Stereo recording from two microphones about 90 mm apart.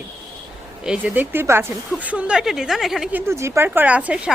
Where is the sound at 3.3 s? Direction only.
30° right (ahead or behind); by 4.3 s 10° right (ahead or behind).